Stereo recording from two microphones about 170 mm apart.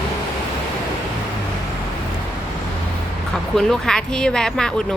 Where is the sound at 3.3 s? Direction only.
5° left (ahead or behind).